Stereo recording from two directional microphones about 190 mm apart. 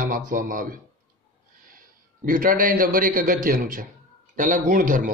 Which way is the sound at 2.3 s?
45° right (ahead or behind).